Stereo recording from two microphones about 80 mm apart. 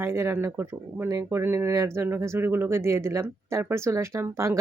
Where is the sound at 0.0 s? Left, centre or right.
Right.